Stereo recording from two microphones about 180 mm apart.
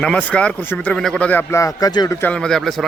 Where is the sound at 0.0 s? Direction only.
5° left (ahead or behind).